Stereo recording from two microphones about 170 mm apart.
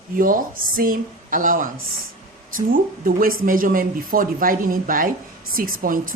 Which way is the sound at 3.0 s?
55° right (ahead or behind).